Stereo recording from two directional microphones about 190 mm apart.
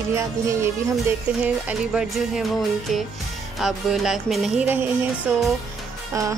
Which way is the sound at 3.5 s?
Centre (ahead or behind).